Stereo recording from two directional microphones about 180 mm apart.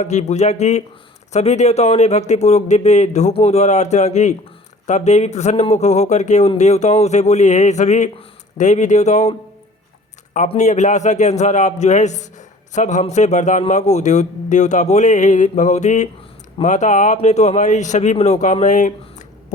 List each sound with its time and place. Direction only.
0.0 s a man's voice: 40° left (ahead or behind)
10.3 s a man's voice: 40° left (ahead or behind)